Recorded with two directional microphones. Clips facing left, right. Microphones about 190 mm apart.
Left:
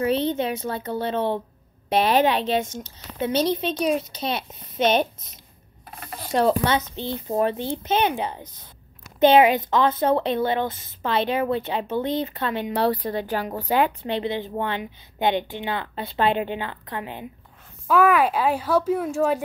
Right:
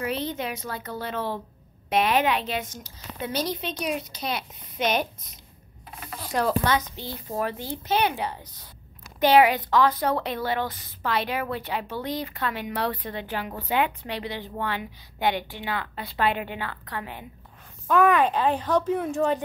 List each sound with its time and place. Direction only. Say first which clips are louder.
0.0 s a woman's voice: left 7 dB; 30° left (ahead or behind)
14.0 s a woman's voice: left 7 dB; 25° left (ahead or behind)
17.8 s speech: left 2 dB; 5° left (ahead or behind)